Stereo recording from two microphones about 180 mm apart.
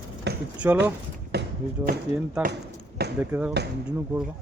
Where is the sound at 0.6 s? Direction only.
10° right (ahead or behind).